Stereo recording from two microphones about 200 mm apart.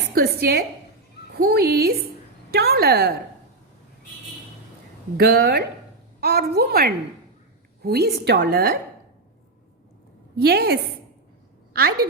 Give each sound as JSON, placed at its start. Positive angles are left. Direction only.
{"t": 0.1, "sound": "a sound", "side_deg": -50}
{"t": 1.3, "sound": "a woman's voice", "side_deg": -50}
{"t": 5.1, "sound": "a woman's voice", "side_deg": -50}
{"t": 10.3, "sound": "a woman's voice", "side_deg": -50}